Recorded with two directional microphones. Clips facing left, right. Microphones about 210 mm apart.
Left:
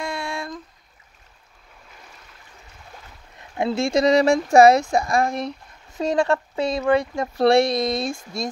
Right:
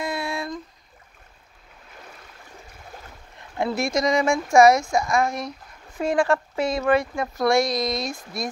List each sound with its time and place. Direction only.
0.0 s a sound: 5° right (ahead or behind)
3.5 s a woman's voice: 25° left (ahead or behind)
7.3 s speech: 30° left (ahead or behind)